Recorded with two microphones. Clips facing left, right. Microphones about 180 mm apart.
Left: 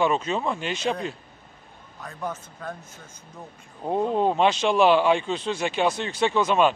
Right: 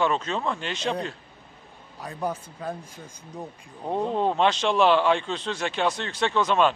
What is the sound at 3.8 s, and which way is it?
Speech, 5° left (ahead or behind).